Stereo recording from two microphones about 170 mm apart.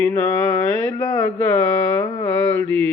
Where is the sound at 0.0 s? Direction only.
15° left (ahead or behind).